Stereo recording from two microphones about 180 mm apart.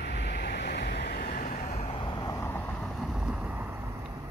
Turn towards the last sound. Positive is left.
turn(degrees=-10)  # may be behind; listen again after turning